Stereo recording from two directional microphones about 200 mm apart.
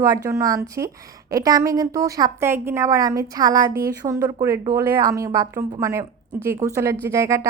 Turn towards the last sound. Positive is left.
turn(degrees=-15)  # may be behind; listen again after turning